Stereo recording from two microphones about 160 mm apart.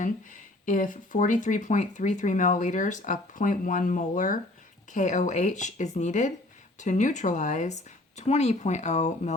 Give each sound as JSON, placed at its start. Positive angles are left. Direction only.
{"t": 0.0, "sound": "speech", "side_deg": 55}